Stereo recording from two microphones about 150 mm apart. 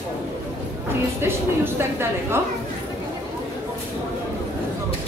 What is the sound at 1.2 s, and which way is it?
Speech, 15° right (ahead or behind).